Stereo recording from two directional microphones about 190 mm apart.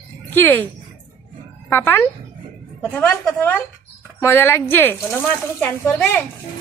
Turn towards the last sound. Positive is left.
turn(degrees=10)  # may be behind; listen again after turning